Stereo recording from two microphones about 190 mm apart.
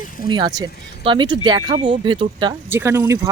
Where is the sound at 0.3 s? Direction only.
25° right (ahead or behind).